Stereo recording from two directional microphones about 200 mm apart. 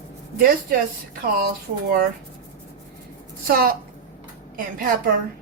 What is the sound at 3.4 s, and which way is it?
Speech, 50° right (ahead or behind).